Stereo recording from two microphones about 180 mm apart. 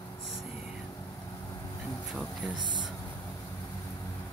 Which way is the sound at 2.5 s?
25° right (ahead or behind).